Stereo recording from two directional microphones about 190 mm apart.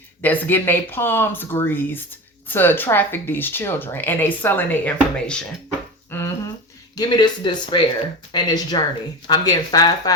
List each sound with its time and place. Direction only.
0.2 s speech: 10° left (ahead or behind)
6.1 s a sound: 10° left (ahead or behind)
6.9 s speech: 20° left (ahead or behind)